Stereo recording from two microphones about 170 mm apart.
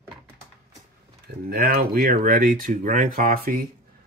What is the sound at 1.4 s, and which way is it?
Speech, 60° right (ahead or behind).